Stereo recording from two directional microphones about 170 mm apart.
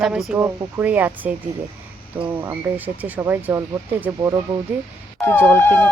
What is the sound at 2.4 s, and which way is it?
Speech, 10° right (ahead or behind).